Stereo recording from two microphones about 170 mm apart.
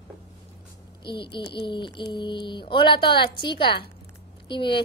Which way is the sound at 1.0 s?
30° left (ahead or behind).